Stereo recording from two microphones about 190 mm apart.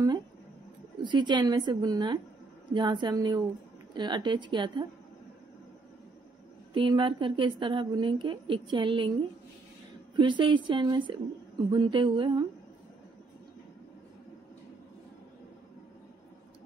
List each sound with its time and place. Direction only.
1.0 s a woman's voice: 25° right (ahead or behind)
6.7 s a woman's voice: 25° right (ahead or behind)
10.1 s a woman's voice: 25° right (ahead or behind)